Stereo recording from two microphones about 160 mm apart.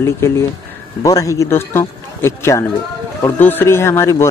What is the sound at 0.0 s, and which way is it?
Speech, 15° left (ahead or behind).